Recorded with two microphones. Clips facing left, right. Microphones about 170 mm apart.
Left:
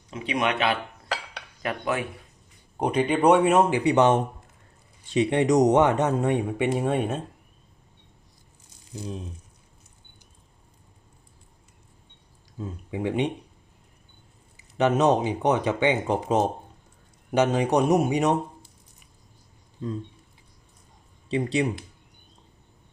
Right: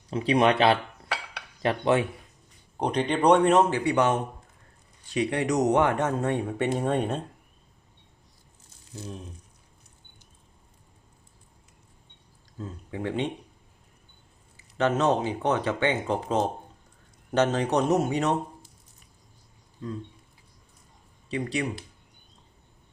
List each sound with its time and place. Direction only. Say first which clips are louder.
0.1 s speech: right 5 dB; 35° right (ahead or behind)
2.7 s speech: left 3 dB; 5° left (ahead or behind)
8.9 s speech: left 4 dB; 15° left (ahead or behind)
12.5 s speech: left 3 dB; 15° left (ahead or behind)
14.5 s speech: left 3 dB; 15° left (ahead or behind)
21.2 s speech: left 5 dB; 20° left (ahead or behind)